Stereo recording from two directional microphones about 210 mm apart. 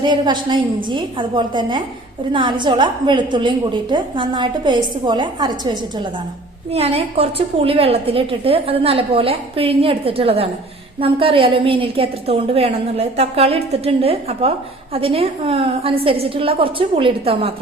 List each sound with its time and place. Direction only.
0.0 s a woman's voice: 20° right (ahead or behind)